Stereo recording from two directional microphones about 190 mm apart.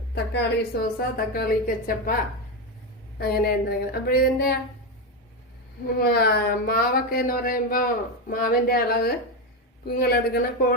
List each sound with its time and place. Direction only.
0.1 s a woman's voice: 60° left (ahead or behind)
3.2 s a sound: 50° left (ahead or behind)
6.0 s a woman's voice: 55° left (ahead or behind)